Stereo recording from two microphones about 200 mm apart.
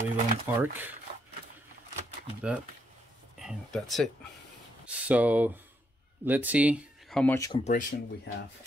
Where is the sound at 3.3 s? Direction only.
Centre (ahead or behind).